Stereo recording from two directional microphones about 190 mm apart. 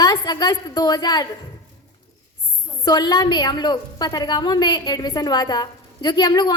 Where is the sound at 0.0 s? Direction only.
20° left (ahead or behind).